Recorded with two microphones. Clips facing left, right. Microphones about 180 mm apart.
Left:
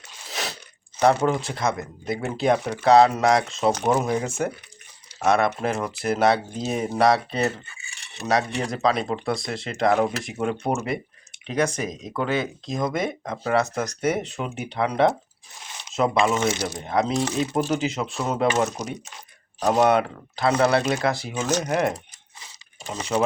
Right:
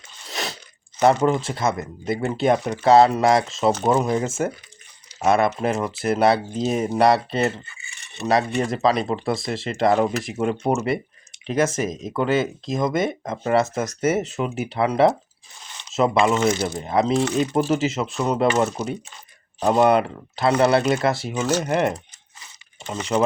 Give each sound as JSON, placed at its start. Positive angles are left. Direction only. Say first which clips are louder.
{"t": 0.3, "sound": "crunch", "louder": "right 2 dB", "side_deg": 0}
{"t": 1.0, "sound": "speech", "louder": "right 2 dB", "side_deg": 0}